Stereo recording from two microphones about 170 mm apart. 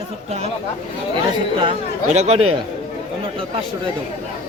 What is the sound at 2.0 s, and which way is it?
Speech, 40° right (ahead or behind).